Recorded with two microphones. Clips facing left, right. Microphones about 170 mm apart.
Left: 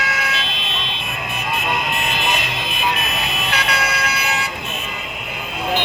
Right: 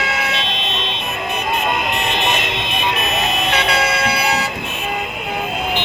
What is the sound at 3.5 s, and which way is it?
Vehicle, 30° right (ahead or behind).